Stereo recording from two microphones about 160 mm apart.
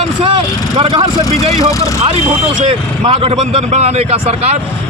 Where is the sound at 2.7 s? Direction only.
35° right (ahead or behind).